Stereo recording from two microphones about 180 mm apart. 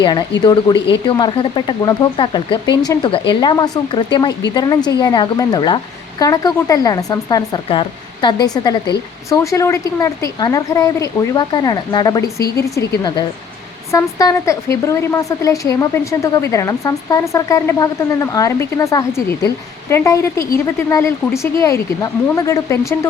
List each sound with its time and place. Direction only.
0.0 s speech: 25° left (ahead or behind)